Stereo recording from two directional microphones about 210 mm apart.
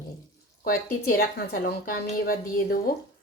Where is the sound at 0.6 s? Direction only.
45° left (ahead or behind).